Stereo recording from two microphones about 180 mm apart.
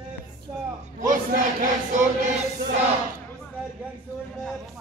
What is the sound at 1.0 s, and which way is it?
Chant, 45° right (ahead or behind).